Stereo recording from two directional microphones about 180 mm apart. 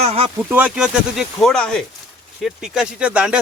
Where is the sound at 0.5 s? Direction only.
5° right (ahead or behind).